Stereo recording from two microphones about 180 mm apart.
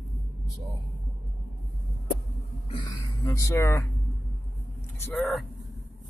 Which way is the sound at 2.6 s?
25° left (ahead or behind).